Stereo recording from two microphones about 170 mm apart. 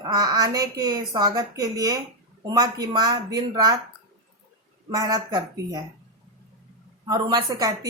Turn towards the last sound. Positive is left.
turn(degrees=-20)  # may be behind; listen again after turning